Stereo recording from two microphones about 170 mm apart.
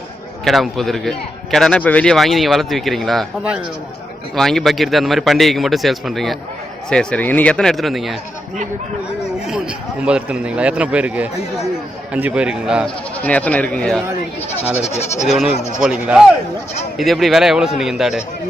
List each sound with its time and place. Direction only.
0.4 s a man's voice: centre (ahead or behind)
9.5 s a man's voice: 5° right (ahead or behind)
13.2 s speech: 10° left (ahead or behind)
15.5 s speech: 40° left (ahead or behind)
15.8 s a man's voice: 5° right (ahead or behind)